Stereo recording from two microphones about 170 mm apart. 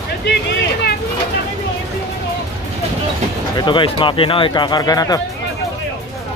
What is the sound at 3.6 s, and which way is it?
Speech, 30° left (ahead or behind).